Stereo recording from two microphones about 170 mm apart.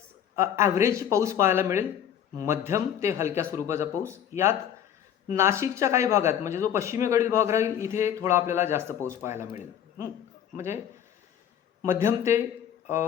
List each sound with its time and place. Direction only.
0.3 s speech: 15° right (ahead or behind)
11.9 s speech: 15° right (ahead or behind)